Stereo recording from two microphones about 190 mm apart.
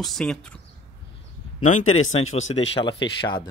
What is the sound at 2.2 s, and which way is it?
Speech, 90° left.